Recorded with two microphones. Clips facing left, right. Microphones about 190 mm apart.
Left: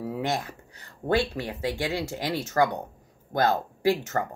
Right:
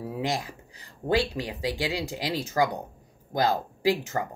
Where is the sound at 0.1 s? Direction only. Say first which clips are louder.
Right 1 dB; 10° right (ahead or behind).